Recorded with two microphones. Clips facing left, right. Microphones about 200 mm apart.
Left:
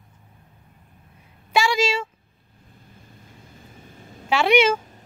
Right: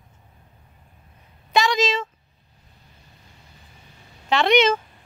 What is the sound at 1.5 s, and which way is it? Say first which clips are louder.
Speech: even; 10° left (ahead or behind).